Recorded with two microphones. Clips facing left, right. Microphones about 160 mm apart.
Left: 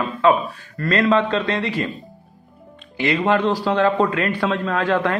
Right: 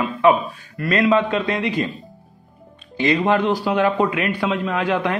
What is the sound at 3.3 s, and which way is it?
A man's voice, 15° right (ahead or behind).